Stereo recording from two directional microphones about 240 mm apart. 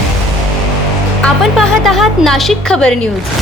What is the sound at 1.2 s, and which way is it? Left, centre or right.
A woman's voice, centre.